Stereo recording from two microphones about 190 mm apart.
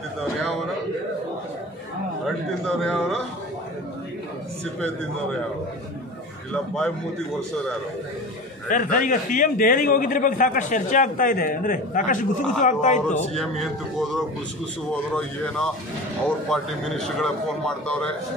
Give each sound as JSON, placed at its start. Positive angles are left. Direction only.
{"t": 2.6, "sound": "a man's voice", "side_deg": 5}
{"t": 6.5, "sound": "a man's voice", "side_deg": 5}
{"t": 8.6, "sound": "a man's voice", "side_deg": 45}
{"t": 13.4, "sound": "a man's voice", "side_deg": 0}